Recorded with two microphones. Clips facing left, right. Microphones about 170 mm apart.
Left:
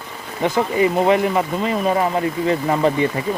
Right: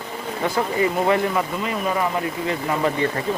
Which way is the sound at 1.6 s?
30° left (ahead or behind).